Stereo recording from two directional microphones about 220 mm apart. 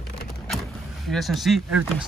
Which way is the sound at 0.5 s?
Centre (ahead or behind).